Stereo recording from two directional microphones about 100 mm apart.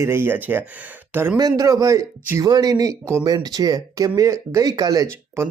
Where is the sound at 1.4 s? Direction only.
40° right (ahead or behind).